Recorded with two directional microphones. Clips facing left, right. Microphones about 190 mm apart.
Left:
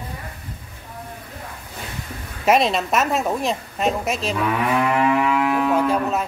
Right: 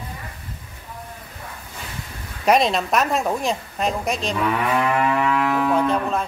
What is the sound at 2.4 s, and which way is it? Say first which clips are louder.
A woman's voice: even; centre (ahead or behind).